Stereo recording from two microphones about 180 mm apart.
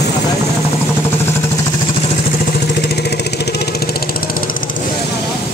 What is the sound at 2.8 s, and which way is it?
Vehicle, 65° left (ahead or behind).